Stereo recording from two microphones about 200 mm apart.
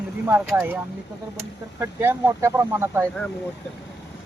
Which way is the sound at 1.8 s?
10° right (ahead or behind).